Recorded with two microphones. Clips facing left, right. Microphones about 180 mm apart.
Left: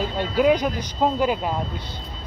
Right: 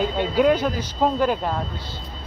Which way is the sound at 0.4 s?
5° left (ahead or behind).